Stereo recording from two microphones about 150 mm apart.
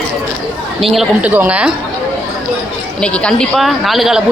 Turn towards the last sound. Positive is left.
turn(degrees=0)  # may be behind; listen again after turning